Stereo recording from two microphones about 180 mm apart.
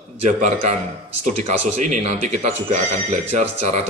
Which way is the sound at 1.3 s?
40° right (ahead or behind).